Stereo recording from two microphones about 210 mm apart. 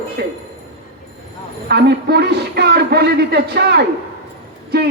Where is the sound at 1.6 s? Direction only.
50° right (ahead or behind).